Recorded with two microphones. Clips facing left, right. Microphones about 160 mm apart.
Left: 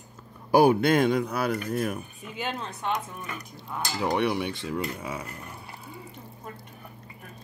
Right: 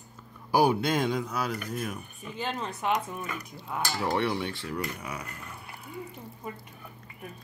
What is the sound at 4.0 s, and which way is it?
Speech, 15° left (ahead or behind).